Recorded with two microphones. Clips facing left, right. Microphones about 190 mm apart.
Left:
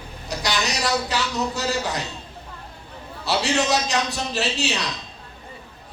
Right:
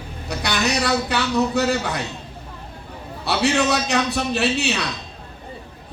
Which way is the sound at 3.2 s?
60° right (ahead or behind).